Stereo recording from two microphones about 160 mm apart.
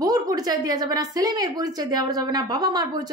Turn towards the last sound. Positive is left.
turn(degrees=-25)  # may be behind; listen again after turning